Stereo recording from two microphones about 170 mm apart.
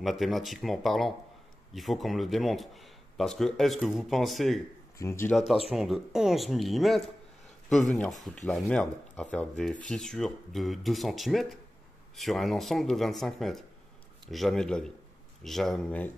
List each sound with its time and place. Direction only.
0.0 s speech: centre (ahead or behind)
5.0 s speech: 20° left (ahead or behind)
5.7 s speech: centre (ahead or behind)